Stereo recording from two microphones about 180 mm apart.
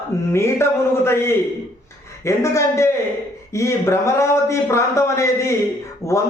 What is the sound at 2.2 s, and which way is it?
Speech, 15° left (ahead or behind).